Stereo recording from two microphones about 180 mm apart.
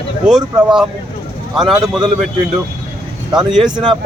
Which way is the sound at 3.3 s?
Centre (ahead or behind).